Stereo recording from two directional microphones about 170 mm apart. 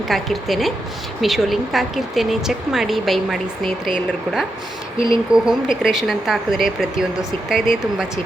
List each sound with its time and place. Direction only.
0.1 s speech: centre (ahead or behind)
4.9 s speech: 30° right (ahead or behind)
5.3 s speech: 5° right (ahead or behind)